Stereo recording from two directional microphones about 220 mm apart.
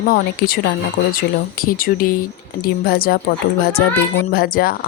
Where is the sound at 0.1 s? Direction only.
40° left (ahead or behind).